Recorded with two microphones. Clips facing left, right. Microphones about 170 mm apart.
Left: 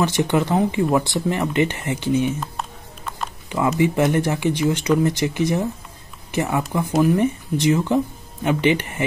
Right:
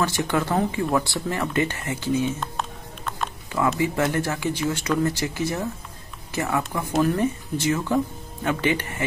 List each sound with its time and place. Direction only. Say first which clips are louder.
0.0 s speech: left 4 dB; 20° left (ahead or behind)
3.4 s speech: left 4 dB; 20° left (ahead or behind)